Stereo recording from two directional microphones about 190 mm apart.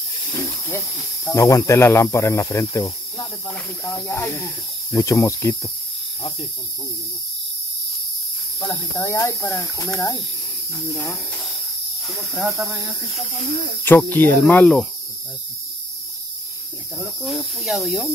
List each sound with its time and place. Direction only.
0.3 s speech: 10° left (ahead or behind)
8.5 s speech: 10° left (ahead or behind)
11.0 s speech: 10° left (ahead or behind)
12.0 s speech: 5° right (ahead or behind)
13.8 s speech: 10° left (ahead or behind)
17.0 s speech: centre (ahead or behind)